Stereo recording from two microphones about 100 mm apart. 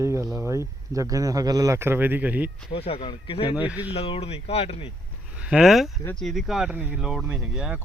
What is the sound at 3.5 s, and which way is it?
Speech, 15° right (ahead or behind).